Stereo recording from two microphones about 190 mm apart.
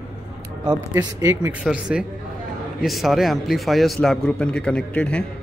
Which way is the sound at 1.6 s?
5° right (ahead or behind).